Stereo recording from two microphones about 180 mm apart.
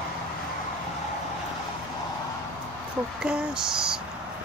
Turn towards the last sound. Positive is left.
turn(degrees=-5)  # may be behind; listen again after turning